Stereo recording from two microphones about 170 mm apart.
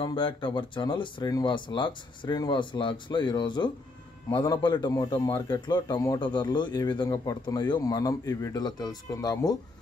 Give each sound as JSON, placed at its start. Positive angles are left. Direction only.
{"t": 0.0, "sound": "a man's voice", "side_deg": 30}